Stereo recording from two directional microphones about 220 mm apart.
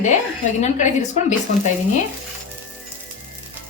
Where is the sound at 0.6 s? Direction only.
30° left (ahead or behind).